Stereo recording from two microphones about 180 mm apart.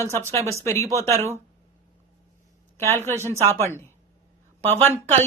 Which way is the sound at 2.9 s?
15° left (ahead or behind).